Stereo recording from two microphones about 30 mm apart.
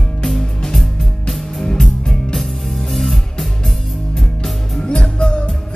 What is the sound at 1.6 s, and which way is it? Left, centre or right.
Music, centre.